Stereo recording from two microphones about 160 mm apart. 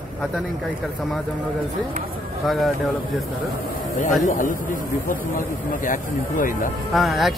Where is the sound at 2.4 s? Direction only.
Centre (ahead or behind).